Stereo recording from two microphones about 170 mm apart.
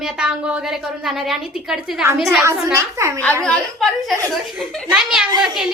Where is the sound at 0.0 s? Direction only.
5° right (ahead or behind).